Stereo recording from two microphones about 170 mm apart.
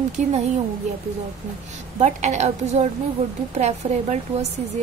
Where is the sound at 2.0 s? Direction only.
40° right (ahead or behind).